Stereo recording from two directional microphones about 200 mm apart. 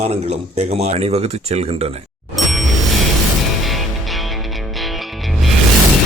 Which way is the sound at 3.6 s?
Centre (ahead or behind).